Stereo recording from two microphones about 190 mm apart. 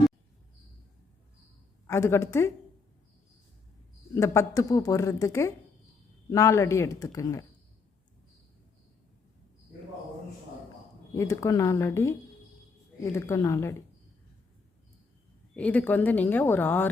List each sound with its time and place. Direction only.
1.9 s speech: 15° left (ahead or behind)
4.1 s speech: 15° left (ahead or behind)
11.1 s speech: 15° left (ahead or behind)
15.5 s speech: 10° left (ahead or behind)